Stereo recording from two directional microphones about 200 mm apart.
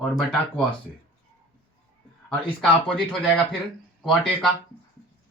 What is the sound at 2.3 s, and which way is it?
Speech, 5° left (ahead or behind).